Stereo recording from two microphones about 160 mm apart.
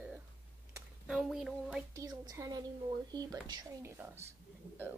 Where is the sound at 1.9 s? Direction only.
25° right (ahead or behind).